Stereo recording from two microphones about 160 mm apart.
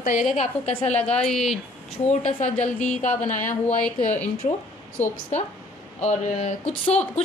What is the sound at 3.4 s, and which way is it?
Speech, 10° left (ahead or behind).